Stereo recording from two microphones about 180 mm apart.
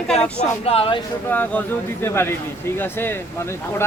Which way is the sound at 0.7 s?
30° left (ahead or behind).